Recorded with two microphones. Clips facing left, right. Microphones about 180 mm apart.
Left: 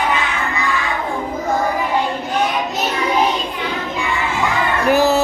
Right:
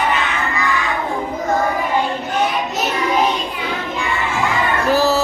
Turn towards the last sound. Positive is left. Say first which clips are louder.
# left 2 dB
turn(degrees=15)  # may be behind; listen again after turning